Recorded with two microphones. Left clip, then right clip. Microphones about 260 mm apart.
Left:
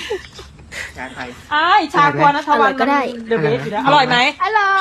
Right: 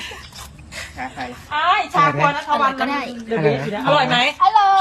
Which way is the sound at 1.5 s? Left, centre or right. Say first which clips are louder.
Left 4 dB; left.